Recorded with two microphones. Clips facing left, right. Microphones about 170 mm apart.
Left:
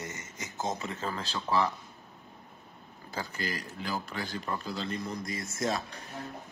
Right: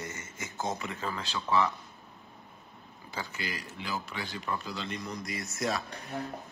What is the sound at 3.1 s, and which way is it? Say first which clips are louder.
A man's voice: left 2 dB; 40° left (ahead or behind).